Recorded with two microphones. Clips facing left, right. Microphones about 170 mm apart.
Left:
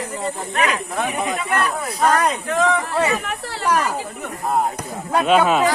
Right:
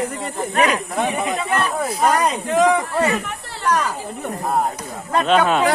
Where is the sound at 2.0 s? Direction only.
10° right (ahead or behind).